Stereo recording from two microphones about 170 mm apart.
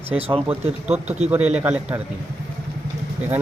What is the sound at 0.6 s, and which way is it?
Speech, 40° right (ahead or behind).